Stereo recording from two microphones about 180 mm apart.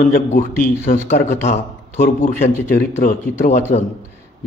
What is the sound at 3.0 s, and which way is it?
Speech, 50° left (ahead or behind).